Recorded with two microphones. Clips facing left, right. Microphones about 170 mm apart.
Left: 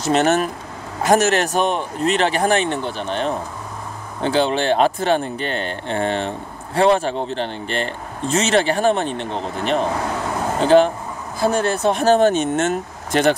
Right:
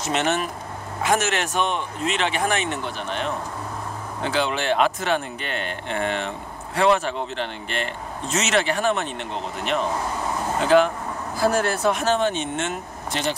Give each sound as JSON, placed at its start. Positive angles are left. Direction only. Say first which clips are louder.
{"t": 0.0, "sound": "speech", "louder": "left 6 dB", "side_deg": 40}
{"t": 12.0, "sound": "speech", "louder": "left 7 dB", "side_deg": 40}